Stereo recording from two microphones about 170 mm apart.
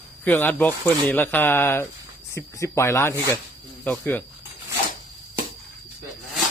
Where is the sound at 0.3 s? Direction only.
10° left (ahead or behind).